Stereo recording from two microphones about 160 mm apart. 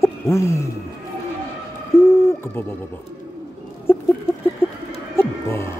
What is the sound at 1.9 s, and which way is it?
Hoot, 15° left (ahead or behind).